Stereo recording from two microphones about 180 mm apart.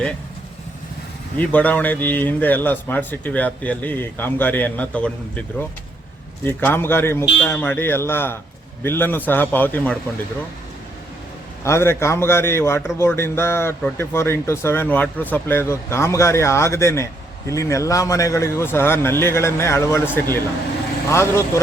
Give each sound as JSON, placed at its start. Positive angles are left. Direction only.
{"t": 1.4, "sound": "a man's voice", "side_deg": 10}
{"t": 11.6, "sound": "a man's voice", "side_deg": 15}